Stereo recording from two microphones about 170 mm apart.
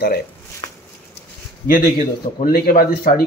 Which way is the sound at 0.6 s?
30° left (ahead or behind).